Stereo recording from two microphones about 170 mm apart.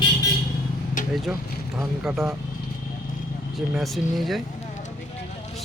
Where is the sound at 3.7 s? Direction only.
Centre (ahead or behind).